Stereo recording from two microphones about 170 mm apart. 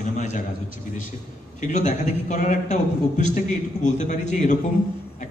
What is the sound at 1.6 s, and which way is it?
A man's voice, 45° left (ahead or behind).